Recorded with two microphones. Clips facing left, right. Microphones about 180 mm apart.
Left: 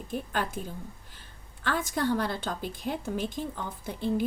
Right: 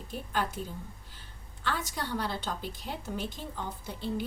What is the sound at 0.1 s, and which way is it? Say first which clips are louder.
Speech: left 2 dB; 50° left (ahead or behind).